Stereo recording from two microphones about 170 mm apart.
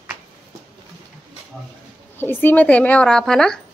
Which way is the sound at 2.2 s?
10° left (ahead or behind).